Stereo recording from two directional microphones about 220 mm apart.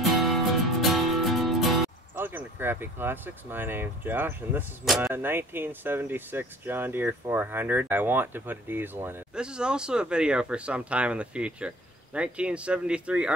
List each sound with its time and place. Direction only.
0.0 s music: centre (ahead or behind)
5.0 s speech: 10° right (ahead or behind)